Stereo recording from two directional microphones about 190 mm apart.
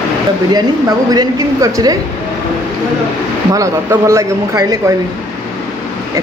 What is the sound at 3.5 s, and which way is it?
Speech, 15° right (ahead or behind).